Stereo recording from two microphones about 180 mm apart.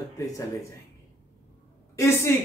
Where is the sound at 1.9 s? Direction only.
15° left (ahead or behind).